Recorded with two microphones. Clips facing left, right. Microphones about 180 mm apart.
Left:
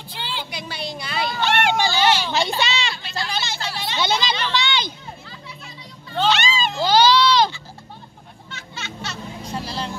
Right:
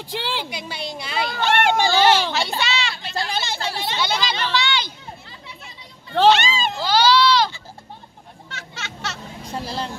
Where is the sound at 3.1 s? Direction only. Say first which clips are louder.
Right 3 dB; 55° right (ahead or behind).